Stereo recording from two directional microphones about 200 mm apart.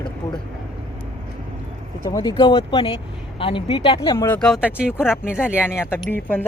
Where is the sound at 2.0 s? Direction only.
20° left (ahead or behind).